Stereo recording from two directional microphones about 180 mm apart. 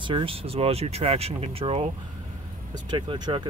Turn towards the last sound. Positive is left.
turn(degrees=-25)  # may be behind; listen again after turning